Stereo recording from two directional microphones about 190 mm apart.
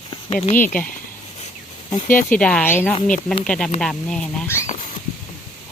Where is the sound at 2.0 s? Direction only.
45° left (ahead or behind).